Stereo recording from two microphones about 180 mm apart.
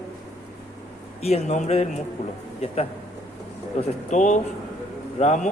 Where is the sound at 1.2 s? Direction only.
35° left (ahead or behind).